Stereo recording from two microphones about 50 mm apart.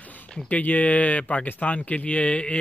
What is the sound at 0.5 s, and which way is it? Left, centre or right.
Speech, left.